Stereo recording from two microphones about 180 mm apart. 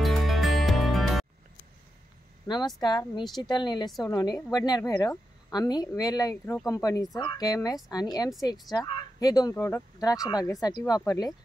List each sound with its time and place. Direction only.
0.0 s music: centre (ahead or behind)
2.4 s speech: 25° left (ahead or behind)